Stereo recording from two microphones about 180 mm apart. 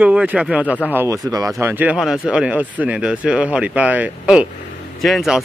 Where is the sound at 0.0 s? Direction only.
5° right (ahead or behind).